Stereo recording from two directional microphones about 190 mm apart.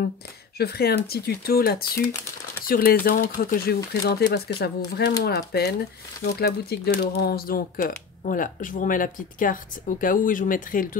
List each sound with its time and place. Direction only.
0.6 s speech: 55° left (ahead or behind)